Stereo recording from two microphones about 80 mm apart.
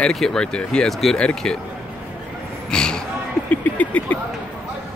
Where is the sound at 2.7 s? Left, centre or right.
Centre.